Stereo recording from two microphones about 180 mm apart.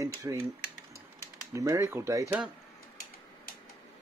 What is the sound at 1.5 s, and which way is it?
Speech, 15° right (ahead or behind).